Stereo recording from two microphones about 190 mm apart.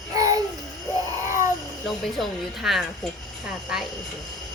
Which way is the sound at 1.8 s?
Centre (ahead or behind).